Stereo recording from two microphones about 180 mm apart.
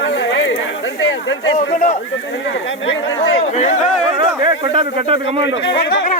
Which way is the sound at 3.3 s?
40° left (ahead or behind).